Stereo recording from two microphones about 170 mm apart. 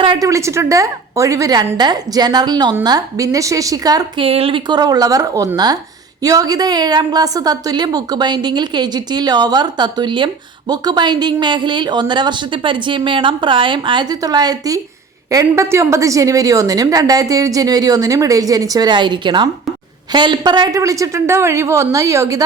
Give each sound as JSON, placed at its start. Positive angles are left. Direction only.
{"t": 0.0, "sound": "a woman's voice", "side_deg": -25}
{"t": 4.3, "sound": "a woman's voice", "side_deg": -35}